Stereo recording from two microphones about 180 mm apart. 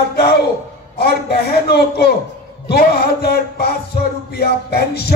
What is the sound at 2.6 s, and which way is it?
Music, 60° left (ahead or behind).